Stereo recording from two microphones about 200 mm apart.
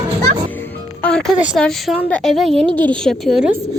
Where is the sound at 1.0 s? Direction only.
5° left (ahead or behind).